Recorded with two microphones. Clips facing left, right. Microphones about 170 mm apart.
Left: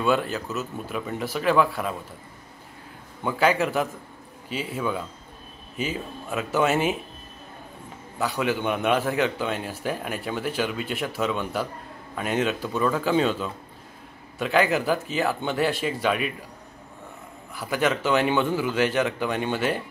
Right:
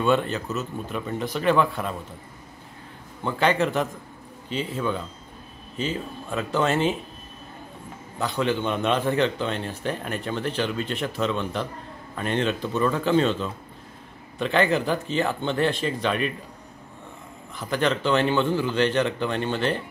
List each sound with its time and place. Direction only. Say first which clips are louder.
0.0 s speech: right 1 dB; 5° left (ahead or behind)
3.3 s a man's voice: even; 5° left (ahead or behind)
8.2 s a man's voice: right 1 dB; 5° left (ahead or behind)
17.6 s a man's voice: even; 10° left (ahead or behind)